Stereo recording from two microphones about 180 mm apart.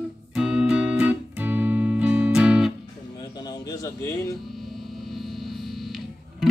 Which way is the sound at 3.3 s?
25° left (ahead or behind).